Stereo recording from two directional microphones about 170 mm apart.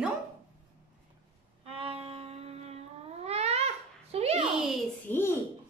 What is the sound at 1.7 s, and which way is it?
Music, 35° right (ahead or behind).